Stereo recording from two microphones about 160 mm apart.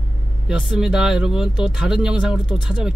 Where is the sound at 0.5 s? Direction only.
5° right (ahead or behind).